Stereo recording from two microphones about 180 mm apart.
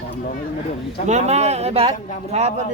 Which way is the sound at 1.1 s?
40° right (ahead or behind).